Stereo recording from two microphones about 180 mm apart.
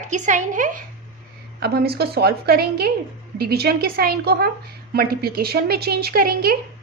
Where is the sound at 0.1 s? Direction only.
45° right (ahead or behind).